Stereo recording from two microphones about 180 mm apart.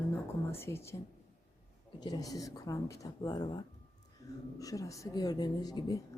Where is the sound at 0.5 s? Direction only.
15° left (ahead or behind).